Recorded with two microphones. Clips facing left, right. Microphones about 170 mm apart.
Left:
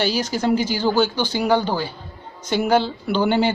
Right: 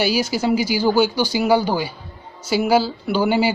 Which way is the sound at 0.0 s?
10° right (ahead or behind).